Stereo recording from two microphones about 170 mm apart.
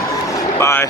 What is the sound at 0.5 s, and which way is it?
Speech, 15° left (ahead or behind).